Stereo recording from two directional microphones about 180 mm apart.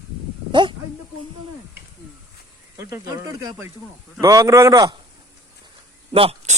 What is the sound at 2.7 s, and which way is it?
Speech, 20° right (ahead or behind).